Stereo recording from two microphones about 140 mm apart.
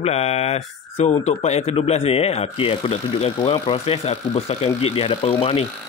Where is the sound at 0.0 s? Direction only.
50° left (ahead or behind).